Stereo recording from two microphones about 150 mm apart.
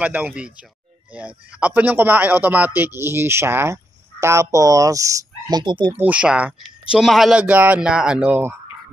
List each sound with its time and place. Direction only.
0.0 s speech: 10° right (ahead or behind); by 5.9 s 30° right (ahead or behind)
5.9 s speech: 10° right (ahead or behind)